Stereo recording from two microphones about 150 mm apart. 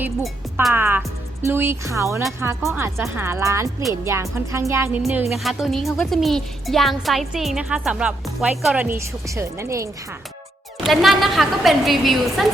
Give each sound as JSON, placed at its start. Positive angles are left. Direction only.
{"t": 0.0, "sound": "speech", "side_deg": -15}
{"t": 5.4, "sound": "speech", "side_deg": 0}
{"t": 10.8, "sound": "speech", "side_deg": 0}